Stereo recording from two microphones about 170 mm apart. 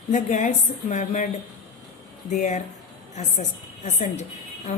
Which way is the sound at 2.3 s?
45° left (ahead or behind).